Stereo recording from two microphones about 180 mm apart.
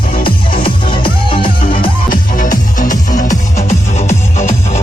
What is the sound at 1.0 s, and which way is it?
Music, 30° left (ahead or behind).